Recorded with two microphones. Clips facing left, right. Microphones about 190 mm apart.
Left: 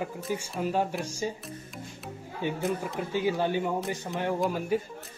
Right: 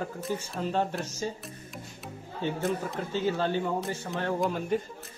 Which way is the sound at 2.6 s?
Centre (ahead or behind).